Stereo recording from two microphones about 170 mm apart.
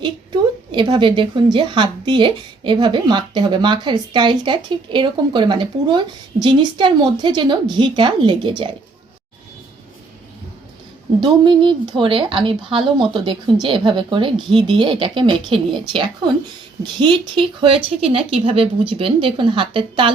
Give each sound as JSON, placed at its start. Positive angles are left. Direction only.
{"t": 0.7, "sound": "a woman's voice", "side_deg": -30}
{"t": 11.2, "sound": "a woman's voice", "side_deg": -25}